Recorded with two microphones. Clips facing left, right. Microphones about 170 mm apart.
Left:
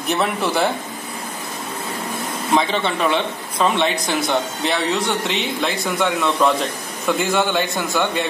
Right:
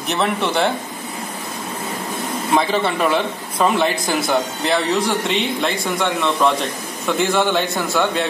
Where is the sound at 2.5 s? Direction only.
5° right (ahead or behind).